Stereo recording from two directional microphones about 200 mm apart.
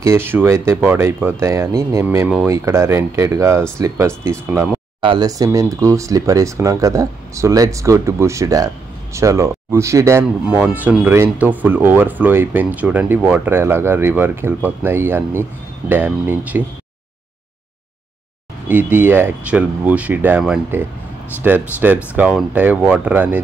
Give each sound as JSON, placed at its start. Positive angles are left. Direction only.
{"t": 0.0, "sound": "speech", "side_deg": -10}
{"t": 18.7, "sound": "speech", "side_deg": -10}